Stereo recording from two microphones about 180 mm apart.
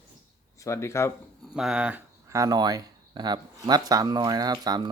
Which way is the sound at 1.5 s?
5° right (ahead or behind).